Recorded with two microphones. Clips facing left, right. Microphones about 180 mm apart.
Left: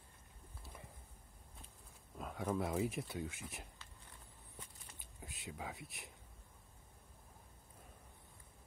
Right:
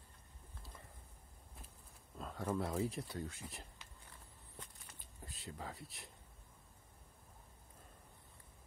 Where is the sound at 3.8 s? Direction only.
15° right (ahead or behind).